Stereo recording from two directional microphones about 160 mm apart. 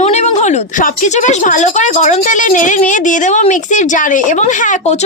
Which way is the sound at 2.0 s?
50° left (ahead or behind).